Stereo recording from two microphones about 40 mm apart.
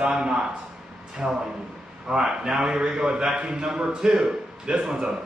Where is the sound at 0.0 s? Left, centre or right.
Right.